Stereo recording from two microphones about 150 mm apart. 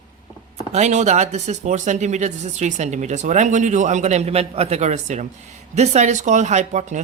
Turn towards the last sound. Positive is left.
turn(degrees=-55)  # may be behind; listen again after turning